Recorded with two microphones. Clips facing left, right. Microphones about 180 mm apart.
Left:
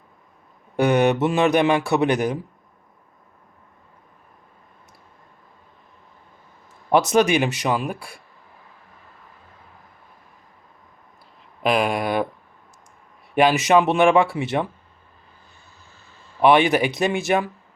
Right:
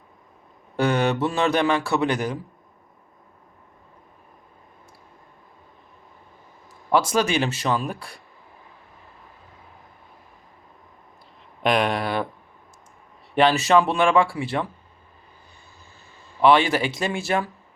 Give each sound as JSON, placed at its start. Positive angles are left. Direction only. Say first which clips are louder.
{"t": 0.8, "sound": "a man's voice", "louder": "left 4 dB", "side_deg": 15}
{"t": 6.9, "sound": "a man's voice", "louder": "left 4 dB", "side_deg": 20}
{"t": 11.6, "sound": "a man's voice", "louder": "left 1 dB", "side_deg": 5}
{"t": 13.3, "sound": "speech", "louder": "left 1 dB", "side_deg": 15}
{"t": 16.4, "sound": "speech", "louder": "left 2 dB", "side_deg": 20}